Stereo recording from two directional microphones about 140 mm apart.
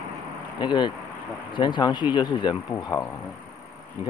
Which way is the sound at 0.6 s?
35° left (ahead or behind).